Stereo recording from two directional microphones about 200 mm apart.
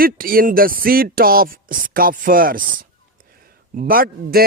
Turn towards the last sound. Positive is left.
turn(degrees=-45)  # may be behind; listen again after turning